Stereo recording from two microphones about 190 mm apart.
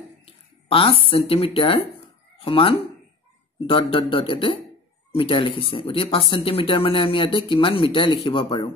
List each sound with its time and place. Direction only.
0.2 s speech: 30° left (ahead or behind)